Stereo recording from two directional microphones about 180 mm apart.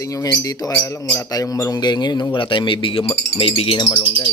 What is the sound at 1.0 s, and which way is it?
Crowing, 10° left (ahead or behind).